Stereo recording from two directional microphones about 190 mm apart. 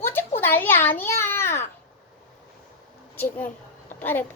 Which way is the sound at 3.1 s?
10° left (ahead or behind).